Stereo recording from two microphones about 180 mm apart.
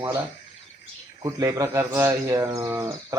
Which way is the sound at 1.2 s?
20° right (ahead or behind).